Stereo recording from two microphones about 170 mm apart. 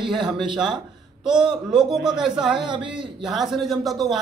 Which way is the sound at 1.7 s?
5° right (ahead or behind).